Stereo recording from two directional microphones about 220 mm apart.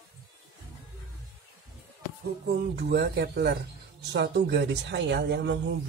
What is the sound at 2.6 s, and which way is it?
Speech, 50° right (ahead or behind).